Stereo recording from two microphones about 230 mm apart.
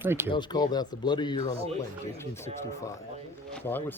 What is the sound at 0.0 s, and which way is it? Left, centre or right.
Speech, centre.